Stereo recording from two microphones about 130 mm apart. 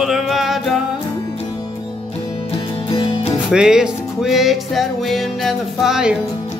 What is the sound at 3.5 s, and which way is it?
Music, 5° right (ahead or behind).